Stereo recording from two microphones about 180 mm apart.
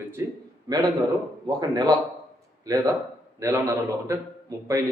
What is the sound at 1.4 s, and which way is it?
A man's voice, 20° right (ahead or behind).